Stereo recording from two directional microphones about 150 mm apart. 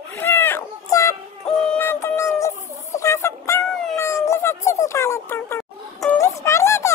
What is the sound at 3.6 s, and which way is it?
Cat, 5° left (ahead or behind).